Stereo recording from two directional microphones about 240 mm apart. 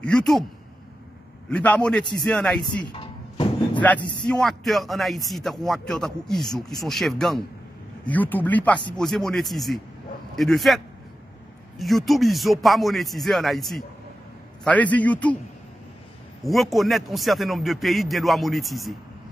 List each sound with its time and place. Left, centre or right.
0.0 s a man's voice: centre
1.5 s a man's voice: centre
2.9 s a sound: centre
4.3 s a man's voice: centre
11.8 s a man's voice: centre
16.4 s a man's voice: centre